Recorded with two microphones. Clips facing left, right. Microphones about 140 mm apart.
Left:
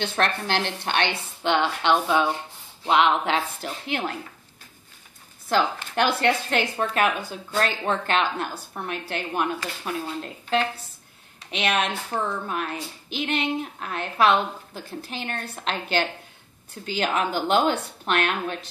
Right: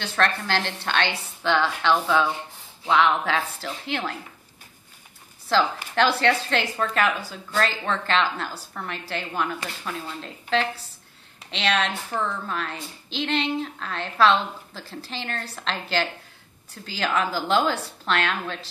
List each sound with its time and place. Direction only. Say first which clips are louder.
0.0 s a woman's voice: even; 20° left (ahead or behind)
5.9 s a woman's voice: right 1 dB; 15° left (ahead or behind)
11.5 s a woman's voice: even; 15° left (ahead or behind)